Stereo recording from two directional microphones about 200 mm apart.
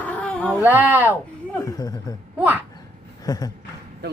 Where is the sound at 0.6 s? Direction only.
10° right (ahead or behind).